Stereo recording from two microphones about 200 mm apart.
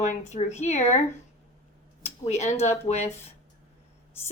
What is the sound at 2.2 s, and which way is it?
Speech, 35° left (ahead or behind).